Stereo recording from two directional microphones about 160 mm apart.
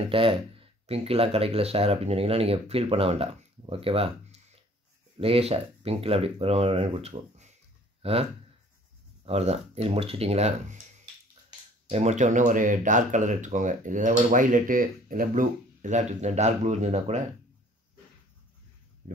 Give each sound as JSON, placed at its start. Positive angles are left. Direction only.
{"t": 0.1, "sound": "speech", "side_deg": -35}
{"t": 11.9, "sound": "speech", "side_deg": -45}